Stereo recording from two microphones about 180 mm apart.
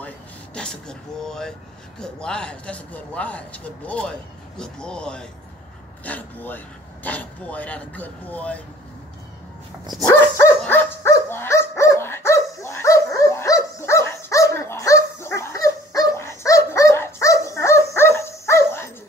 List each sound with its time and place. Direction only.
0.6 s speech: 5° left (ahead or behind)
10.0 s dog: 20° left (ahead or behind)